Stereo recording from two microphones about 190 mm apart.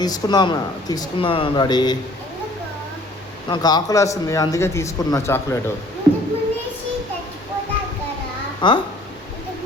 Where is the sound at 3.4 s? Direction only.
20° left (ahead or behind).